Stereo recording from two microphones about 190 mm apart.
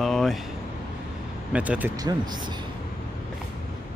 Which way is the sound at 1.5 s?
5° right (ahead or behind).